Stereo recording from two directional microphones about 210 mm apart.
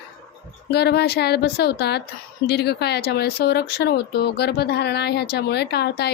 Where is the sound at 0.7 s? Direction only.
50° left (ahead or behind).